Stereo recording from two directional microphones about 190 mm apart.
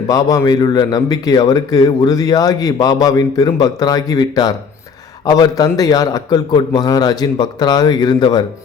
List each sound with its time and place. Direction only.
0.1 s a man's voice: 20° left (ahead or behind)